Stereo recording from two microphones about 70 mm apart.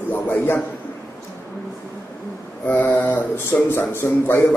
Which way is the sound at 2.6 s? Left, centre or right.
Left.